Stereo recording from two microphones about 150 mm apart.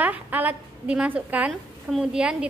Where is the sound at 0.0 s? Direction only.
10° right (ahead or behind).